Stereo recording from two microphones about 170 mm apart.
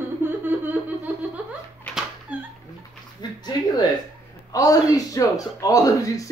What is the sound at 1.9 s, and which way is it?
Dog, 5° right (ahead or behind).